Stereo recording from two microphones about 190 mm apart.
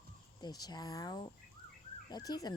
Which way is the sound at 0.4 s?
20° left (ahead or behind).